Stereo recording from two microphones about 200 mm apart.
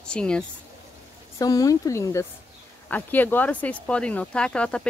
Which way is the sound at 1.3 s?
15° left (ahead or behind).